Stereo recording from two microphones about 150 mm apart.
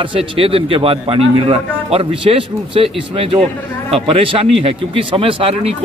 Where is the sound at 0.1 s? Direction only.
40° right (ahead or behind).